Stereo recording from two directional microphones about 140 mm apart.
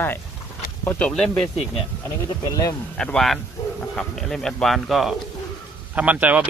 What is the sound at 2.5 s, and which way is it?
Speech, 25° left (ahead or behind).